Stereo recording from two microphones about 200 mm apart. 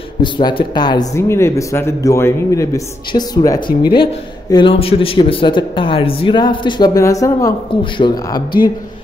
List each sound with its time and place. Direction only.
0.2 s speech: 20° left (ahead or behind)